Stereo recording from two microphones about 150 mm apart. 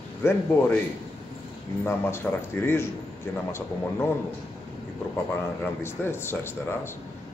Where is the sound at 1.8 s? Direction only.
15° left (ahead or behind).